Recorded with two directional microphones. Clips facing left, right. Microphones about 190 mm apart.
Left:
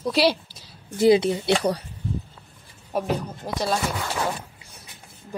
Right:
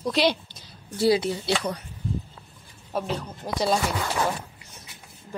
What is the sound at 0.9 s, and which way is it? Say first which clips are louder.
Speech: left 4 dB; 20° left (ahead or behind).